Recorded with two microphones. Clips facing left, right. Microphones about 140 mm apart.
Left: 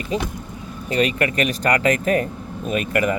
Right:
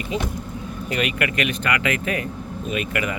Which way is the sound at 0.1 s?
40° left (ahead or behind).